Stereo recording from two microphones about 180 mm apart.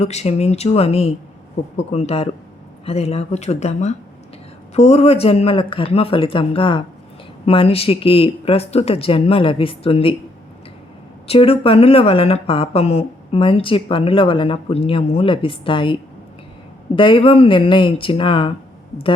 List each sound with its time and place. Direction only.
0.0 s a woman's voice: 35° left (ahead or behind)
11.3 s a woman's voice: 30° left (ahead or behind)